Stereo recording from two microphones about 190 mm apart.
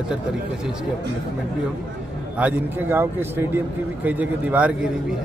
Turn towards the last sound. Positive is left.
turn(degrees=-5)  # may be behind; listen again after turning